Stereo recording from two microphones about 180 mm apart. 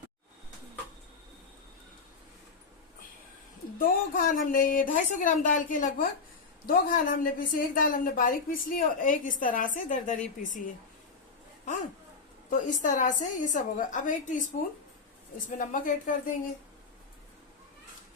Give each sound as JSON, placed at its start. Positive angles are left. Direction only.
{"t": 3.8, "sound": "a woman's voice", "side_deg": 50}
{"t": 12.5, "sound": "a woman's voice", "side_deg": 45}